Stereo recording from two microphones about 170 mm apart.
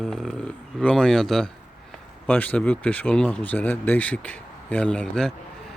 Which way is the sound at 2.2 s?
10° left (ahead or behind).